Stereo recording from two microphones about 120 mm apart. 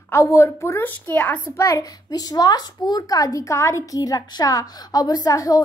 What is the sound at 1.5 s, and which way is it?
A child's voice, 25° left (ahead or behind).